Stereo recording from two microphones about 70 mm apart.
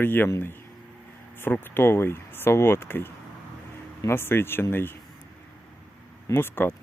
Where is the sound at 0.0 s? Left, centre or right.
Left.